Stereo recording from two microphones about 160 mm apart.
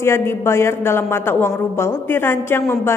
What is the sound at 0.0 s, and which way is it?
A woman's voice, 15° left (ahead or behind).